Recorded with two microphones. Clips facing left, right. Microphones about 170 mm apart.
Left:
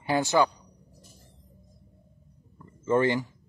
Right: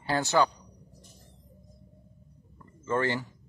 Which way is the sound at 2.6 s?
15° left (ahead or behind).